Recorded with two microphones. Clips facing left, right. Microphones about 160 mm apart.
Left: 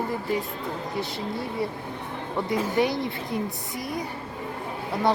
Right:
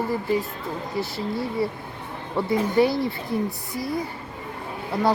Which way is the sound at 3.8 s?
20° left (ahead or behind).